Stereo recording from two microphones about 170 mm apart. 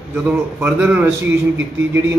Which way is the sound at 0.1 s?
10° right (ahead or behind).